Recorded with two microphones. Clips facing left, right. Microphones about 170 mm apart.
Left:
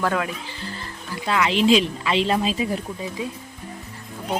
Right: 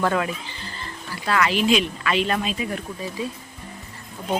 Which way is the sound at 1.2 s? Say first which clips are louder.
Left 1 dB; 15° left (ahead or behind).